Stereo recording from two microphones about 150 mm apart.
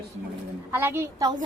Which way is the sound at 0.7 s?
15° right (ahead or behind).